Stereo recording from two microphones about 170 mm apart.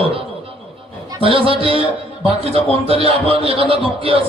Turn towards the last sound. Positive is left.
turn(degrees=-35)  # may be behind; listen again after turning